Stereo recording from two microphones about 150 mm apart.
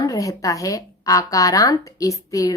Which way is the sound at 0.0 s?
20° left (ahead or behind).